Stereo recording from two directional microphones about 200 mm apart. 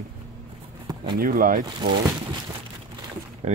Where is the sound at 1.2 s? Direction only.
45° right (ahead or behind).